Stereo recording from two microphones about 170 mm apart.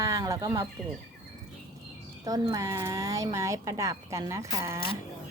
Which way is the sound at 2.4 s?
20° right (ahead or behind).